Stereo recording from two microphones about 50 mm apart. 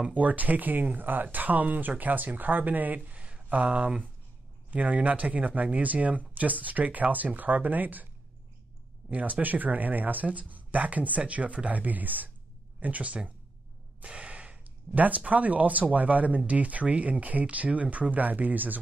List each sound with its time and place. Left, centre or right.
0.0 s speech: right
9.1 s speech: right
14.0 s sigh: right
15.0 s speech: right